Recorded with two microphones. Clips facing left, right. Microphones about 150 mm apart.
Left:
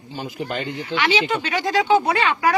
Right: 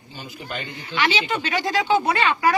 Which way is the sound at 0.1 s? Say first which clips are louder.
Left 7 dB; 80° left.